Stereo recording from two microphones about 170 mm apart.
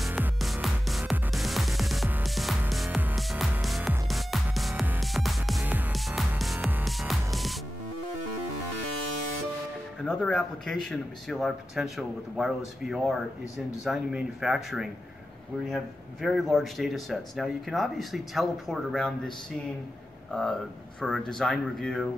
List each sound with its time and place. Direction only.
0.0 s music: 5° right (ahead or behind)
5.6 s music: 10° right (ahead or behind)
10.0 s speech: 5° left (ahead or behind)
20.2 s speech: 5° left (ahead or behind)